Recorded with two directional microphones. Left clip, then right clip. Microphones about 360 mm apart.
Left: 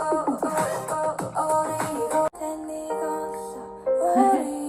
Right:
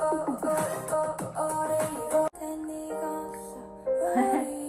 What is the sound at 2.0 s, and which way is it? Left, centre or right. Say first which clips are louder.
Music: left 3 dB; left.